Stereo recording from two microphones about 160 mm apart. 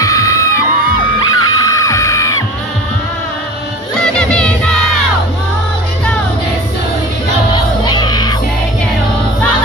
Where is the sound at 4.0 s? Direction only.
5° left (ahead or behind).